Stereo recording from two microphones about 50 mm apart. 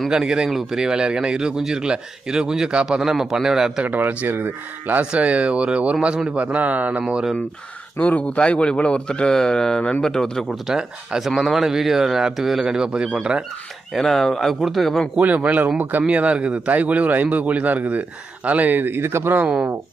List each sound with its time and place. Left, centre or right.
0.1 s a man's voice: centre
3.8 s a man's voice: right
5.1 s a man's voice: right
8.0 s speech: left; by 10.4 s centre
10.7 s a man's voice: centre
11.2 s a man's voice: centre
13.9 s a man's voice: centre
15.1 s a man's voice: right